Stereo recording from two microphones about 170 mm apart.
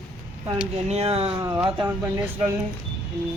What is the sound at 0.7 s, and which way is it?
Speech, 40° right (ahead or behind).